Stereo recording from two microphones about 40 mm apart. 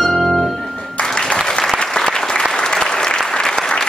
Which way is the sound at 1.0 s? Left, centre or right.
Left.